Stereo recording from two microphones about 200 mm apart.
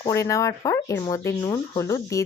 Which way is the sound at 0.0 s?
15° left (ahead or behind).